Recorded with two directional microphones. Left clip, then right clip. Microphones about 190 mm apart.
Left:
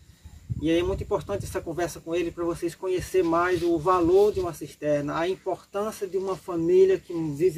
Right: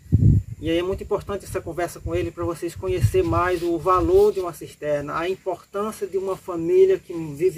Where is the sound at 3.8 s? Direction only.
25° left (ahead or behind).